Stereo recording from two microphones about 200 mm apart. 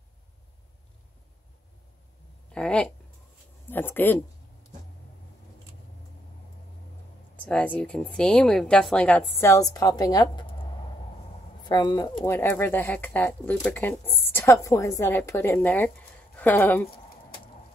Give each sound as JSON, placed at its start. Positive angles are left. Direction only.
{"t": 2.5, "sound": "speech", "side_deg": 5}
{"t": 7.3, "sound": "speech", "side_deg": 5}
{"t": 11.6, "sound": "speech", "side_deg": 20}
{"t": 12.2, "sound": "speech", "side_deg": 10}